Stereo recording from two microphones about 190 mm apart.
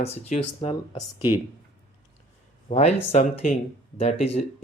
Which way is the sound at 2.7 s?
35° left (ahead or behind).